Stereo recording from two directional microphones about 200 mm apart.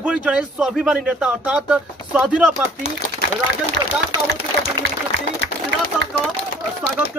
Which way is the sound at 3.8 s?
55° right (ahead or behind).